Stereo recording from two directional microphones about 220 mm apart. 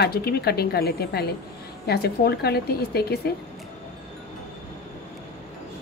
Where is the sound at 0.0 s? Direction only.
45° left (ahead or behind).